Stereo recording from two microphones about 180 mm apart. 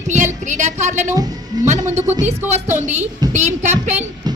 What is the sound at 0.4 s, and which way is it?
A woman's voice, 40° right (ahead or behind).